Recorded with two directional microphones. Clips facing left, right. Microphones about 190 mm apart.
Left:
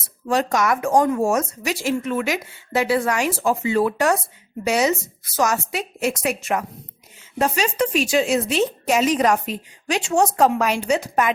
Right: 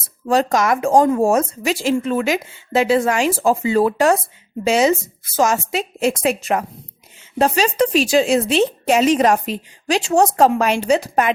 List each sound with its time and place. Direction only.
0.3 s speech: 30° right (ahead or behind)